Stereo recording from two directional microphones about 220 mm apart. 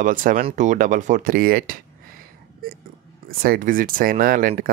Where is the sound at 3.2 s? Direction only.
40° right (ahead or behind).